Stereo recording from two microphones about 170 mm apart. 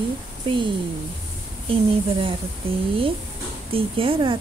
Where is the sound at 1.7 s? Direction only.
30° right (ahead or behind).